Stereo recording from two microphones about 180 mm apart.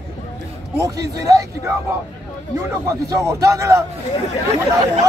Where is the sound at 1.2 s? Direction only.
20° right (ahead or behind).